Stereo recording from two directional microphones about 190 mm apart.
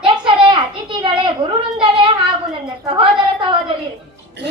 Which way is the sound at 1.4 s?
25° right (ahead or behind).